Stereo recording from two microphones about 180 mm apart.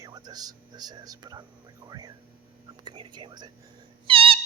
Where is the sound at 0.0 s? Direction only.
20° right (ahead or behind).